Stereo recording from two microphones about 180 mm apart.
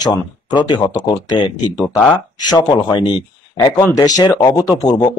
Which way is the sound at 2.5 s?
25° left (ahead or behind).